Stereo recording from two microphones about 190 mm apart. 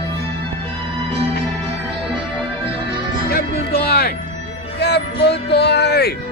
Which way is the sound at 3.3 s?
55° left (ahead or behind).